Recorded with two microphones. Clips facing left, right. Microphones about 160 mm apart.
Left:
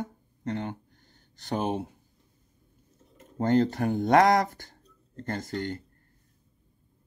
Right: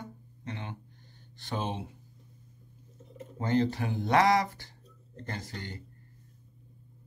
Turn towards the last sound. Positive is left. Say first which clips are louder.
# left 9 dB
turn(degrees=55)  # may be behind; listen again after turning